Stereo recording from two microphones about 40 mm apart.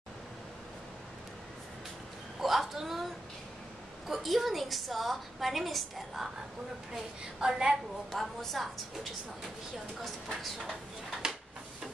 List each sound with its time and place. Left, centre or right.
2.4 s a woman's voice: centre
4.1 s a woman's voice: centre
6.9 s a woman's voice: centre
8.1 s a woman's voice: centre
10.6 s a woman's voice: centre